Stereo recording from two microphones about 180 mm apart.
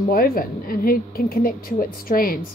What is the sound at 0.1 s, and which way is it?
A woman's voice, 55° left (ahead or behind).